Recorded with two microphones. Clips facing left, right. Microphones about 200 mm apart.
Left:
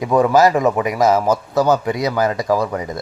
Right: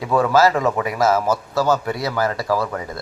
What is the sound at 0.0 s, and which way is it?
Speech, 15° left (ahead or behind).